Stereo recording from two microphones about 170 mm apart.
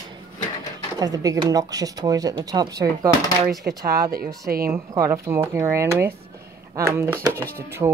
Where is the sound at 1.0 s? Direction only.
20° right (ahead or behind).